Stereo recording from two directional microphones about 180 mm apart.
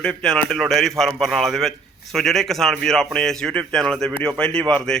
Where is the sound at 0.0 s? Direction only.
5° left (ahead or behind).